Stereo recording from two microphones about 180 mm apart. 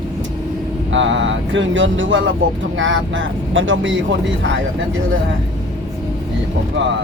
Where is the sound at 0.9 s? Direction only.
90° right.